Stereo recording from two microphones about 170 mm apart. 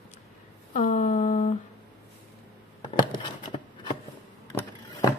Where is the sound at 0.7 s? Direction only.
45° left (ahead or behind).